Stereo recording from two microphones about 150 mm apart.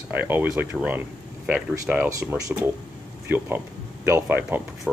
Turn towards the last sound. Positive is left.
turn(degrees=-15)  # may be behind; listen again after turning